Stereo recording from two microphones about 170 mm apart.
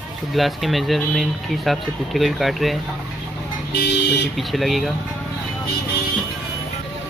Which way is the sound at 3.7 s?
80° left.